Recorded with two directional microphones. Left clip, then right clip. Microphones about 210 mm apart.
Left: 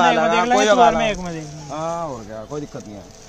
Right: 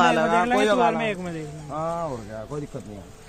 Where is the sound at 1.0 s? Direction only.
50° left (ahead or behind).